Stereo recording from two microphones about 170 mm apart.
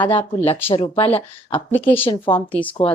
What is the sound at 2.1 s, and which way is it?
Speech, 30° left (ahead or behind).